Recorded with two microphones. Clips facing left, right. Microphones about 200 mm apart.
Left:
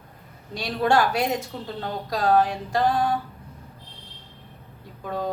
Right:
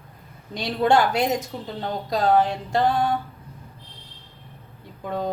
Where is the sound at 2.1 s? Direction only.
20° right (ahead or behind).